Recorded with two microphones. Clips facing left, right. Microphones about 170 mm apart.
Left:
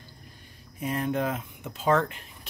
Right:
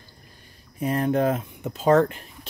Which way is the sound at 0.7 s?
40° right (ahead or behind).